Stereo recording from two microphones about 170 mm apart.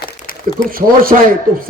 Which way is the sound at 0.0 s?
55° left (ahead or behind).